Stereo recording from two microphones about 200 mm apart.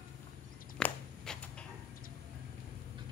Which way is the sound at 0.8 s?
5° left (ahead or behind).